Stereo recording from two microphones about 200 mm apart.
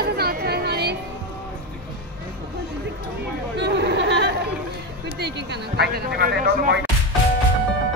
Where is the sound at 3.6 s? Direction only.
55° right (ahead or behind).